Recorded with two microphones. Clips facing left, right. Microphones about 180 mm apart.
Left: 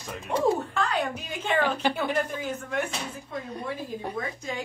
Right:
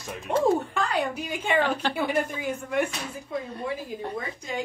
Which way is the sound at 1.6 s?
10° left (ahead or behind).